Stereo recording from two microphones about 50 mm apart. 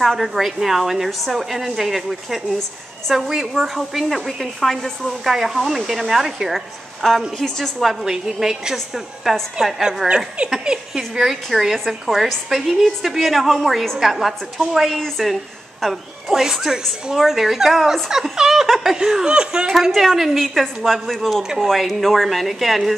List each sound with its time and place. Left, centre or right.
0.0 s a woman's voice: centre
3.6 s a woman's voice: centre
5.2 s speech: centre
7.0 s a woman's voice: centre
7.9 s speech: centre
10.0 s speech: right
11.0 s a woman's voice: centre
15.8 s a woman's voice: centre